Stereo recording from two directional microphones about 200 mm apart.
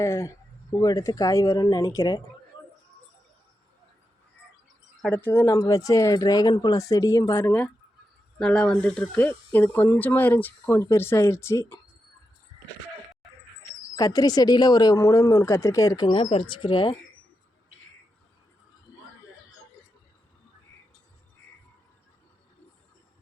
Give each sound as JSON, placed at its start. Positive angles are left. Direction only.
{"t": 0.0, "sound": "speech", "side_deg": 15}
{"t": 5.0, "sound": "speech", "side_deg": 10}
{"t": 13.9, "sound": "speech", "side_deg": 20}